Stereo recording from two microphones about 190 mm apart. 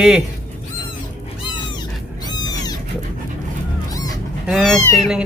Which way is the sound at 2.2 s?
20° left (ahead or behind).